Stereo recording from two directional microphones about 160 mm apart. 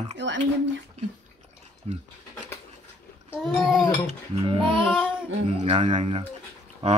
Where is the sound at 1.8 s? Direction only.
40° right (ahead or behind).